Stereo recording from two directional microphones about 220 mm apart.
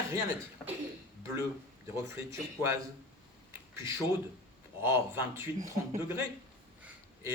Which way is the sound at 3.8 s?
15° right (ahead or behind).